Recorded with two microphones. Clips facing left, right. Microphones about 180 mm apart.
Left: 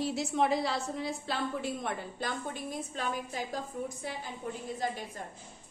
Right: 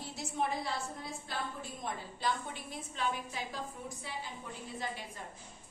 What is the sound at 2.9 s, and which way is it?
A woman's voice, 45° left (ahead or behind).